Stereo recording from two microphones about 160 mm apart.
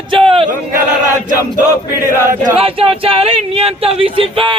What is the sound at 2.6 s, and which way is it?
Speech, 35° right (ahead or behind).